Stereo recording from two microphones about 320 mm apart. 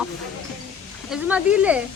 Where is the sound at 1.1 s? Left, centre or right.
Centre.